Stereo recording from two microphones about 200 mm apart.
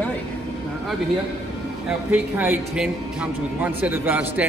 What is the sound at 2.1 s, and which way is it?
Speech, 10° right (ahead or behind).